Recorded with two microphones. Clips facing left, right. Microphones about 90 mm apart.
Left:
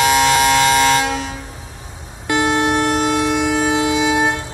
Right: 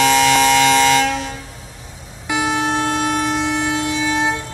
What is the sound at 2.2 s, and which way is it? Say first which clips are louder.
Vehicle: left 3 dB; 20° left (ahead or behind).